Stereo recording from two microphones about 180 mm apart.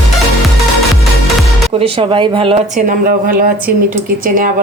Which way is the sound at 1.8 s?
30° right (ahead or behind).